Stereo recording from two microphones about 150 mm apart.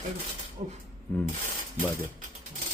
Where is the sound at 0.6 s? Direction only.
45° right (ahead or behind).